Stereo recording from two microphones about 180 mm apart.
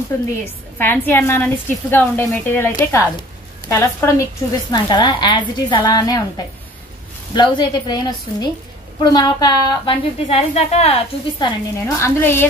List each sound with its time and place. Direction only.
0.1 s a woman's voice: 15° left (ahead or behind)
12.0 s a woman's voice: 10° left (ahead or behind)